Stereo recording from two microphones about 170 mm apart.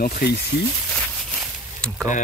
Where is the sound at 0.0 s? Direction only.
60° left (ahead or behind).